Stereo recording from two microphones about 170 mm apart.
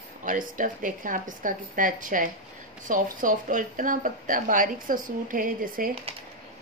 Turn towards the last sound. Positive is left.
turn(degrees=-55)  # may be behind; listen again after turning